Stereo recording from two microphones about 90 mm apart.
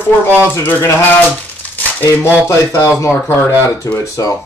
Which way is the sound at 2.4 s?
35° left (ahead or behind).